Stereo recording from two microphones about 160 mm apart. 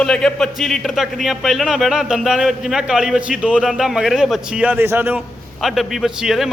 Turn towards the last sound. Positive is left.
turn(degrees=0)  # may be behind; listen again after turning